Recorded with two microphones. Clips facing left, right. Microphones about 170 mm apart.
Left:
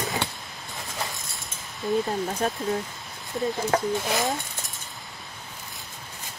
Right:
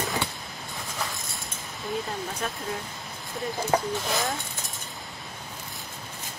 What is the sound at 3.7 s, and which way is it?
Speech, centre (ahead or behind).